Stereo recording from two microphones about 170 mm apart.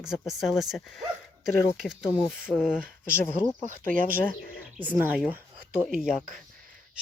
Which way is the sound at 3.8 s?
55° right (ahead or behind).